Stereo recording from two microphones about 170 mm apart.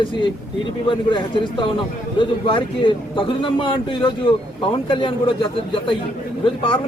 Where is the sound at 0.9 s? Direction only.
30° left (ahead or behind).